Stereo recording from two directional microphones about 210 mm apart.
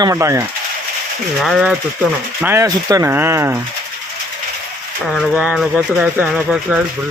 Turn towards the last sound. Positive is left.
turn(degrees=-5)  # may be behind; listen again after turning